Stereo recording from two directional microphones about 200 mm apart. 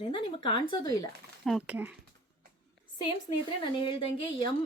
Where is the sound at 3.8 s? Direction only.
25° left (ahead or behind).